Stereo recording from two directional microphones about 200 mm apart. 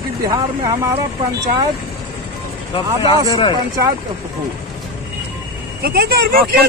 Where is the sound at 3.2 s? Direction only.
20° left (ahead or behind).